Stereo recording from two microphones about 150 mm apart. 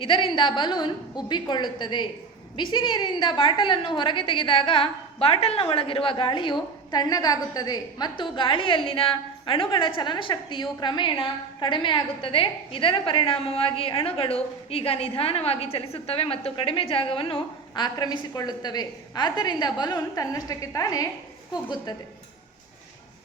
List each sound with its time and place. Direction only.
0.0 s a woman's voice: 35° left (ahead or behind)